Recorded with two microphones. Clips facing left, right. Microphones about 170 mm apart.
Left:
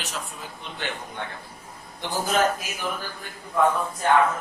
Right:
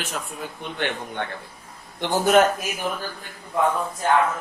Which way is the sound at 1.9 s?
70° right (ahead or behind).